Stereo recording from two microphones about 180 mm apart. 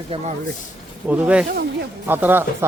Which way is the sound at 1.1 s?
10° right (ahead or behind).